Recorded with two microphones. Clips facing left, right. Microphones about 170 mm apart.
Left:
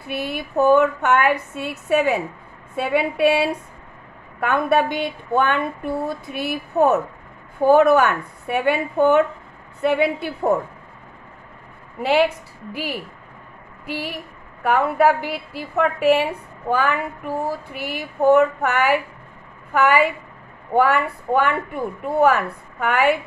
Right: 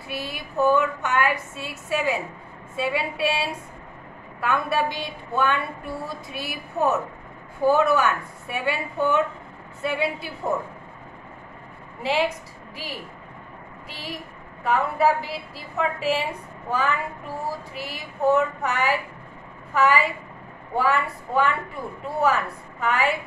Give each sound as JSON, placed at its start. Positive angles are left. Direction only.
{"t": 0.0, "sound": "a woman's voice", "side_deg": 60}
{"t": 12.0, "sound": "a woman's voice", "side_deg": 65}
{"t": 13.8, "sound": "a woman's voice", "side_deg": 65}